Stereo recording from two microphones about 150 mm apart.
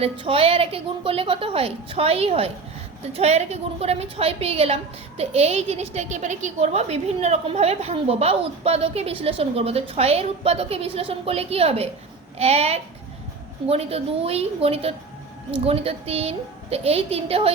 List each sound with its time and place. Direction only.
0.0 s a woman's voice: 40° right (ahead or behind)